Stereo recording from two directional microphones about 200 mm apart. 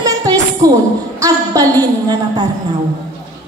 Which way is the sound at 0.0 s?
15° right (ahead or behind).